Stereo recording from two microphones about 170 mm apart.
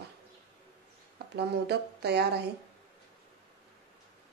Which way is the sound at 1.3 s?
75° right (ahead or behind).